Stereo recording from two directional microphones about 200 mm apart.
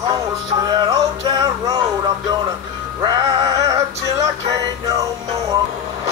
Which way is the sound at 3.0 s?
20° right (ahead or behind).